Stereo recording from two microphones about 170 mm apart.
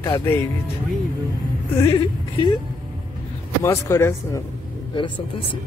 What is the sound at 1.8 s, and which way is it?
Speech, 25° left (ahead or behind).